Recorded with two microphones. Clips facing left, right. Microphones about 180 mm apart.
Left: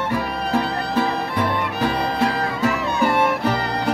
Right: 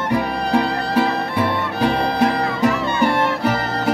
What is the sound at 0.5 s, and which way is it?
Music, 10° right (ahead or behind).